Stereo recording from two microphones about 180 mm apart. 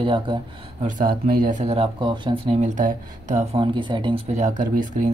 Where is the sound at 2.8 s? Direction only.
45° right (ahead or behind).